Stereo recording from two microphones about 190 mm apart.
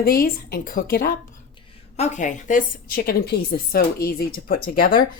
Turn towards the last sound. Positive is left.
turn(degrees=50)  # may be behind; listen again after turning